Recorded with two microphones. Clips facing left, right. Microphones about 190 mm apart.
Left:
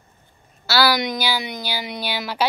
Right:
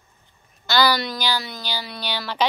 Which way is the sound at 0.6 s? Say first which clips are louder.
Left 1 dB; 5° left (ahead or behind).